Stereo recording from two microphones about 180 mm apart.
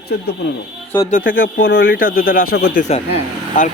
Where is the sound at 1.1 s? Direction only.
50° left (ahead or behind).